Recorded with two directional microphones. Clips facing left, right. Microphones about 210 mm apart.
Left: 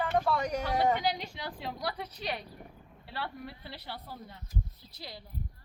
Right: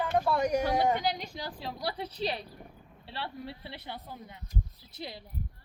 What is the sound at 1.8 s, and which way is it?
Speech, 30° right (ahead or behind).